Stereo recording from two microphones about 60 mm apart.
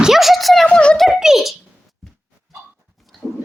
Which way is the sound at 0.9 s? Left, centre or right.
Centre.